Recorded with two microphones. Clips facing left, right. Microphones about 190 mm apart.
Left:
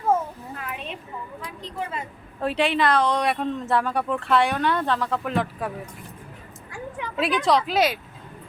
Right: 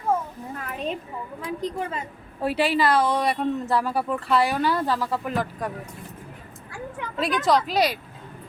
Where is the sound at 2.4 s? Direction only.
5° right (ahead or behind).